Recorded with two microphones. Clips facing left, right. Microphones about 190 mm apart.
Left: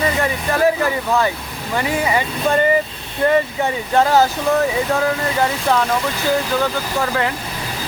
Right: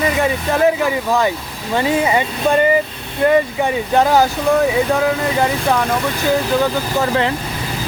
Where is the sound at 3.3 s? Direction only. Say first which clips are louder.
Right 3 dB; 15° right (ahead or behind).